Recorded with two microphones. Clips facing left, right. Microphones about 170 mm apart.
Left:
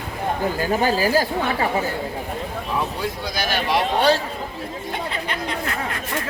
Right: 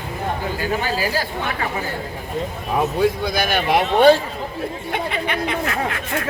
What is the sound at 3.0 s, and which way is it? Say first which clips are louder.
A man's voice: right 7 dB; 55° right (ahead or behind).